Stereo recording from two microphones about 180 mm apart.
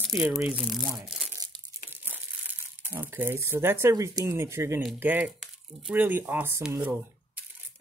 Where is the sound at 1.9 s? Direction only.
10° right (ahead or behind).